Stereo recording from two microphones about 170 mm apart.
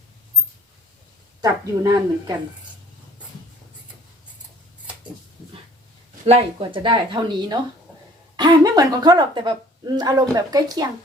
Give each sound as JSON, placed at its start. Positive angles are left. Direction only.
{"t": 1.4, "sound": "a woman's voice", "side_deg": -20}
{"t": 6.2, "sound": "a woman's voice", "side_deg": -35}